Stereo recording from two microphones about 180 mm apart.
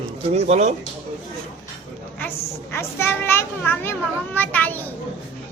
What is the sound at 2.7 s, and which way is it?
A child's voice, 15° left (ahead or behind).